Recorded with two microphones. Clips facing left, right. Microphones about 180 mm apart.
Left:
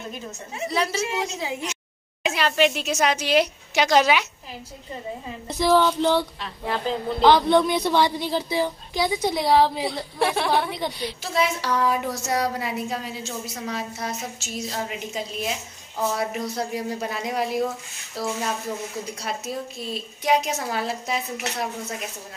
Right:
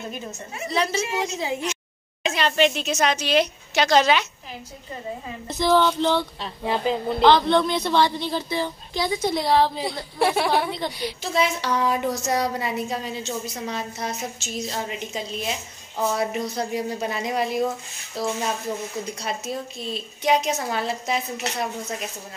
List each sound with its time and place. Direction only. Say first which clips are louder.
0.7 s a woman's voice: right 1 dB; 5° left (ahead or behind)
5.5 s a woman's voice: even; 10° left (ahead or behind)
6.4 s speech: right 3 dB; 20° right (ahead or behind)
7.2 s a woman's voice: left 1 dB; 10° left (ahead or behind)
10.1 s a woman's voice: right 2 dB; 5° right (ahead or behind)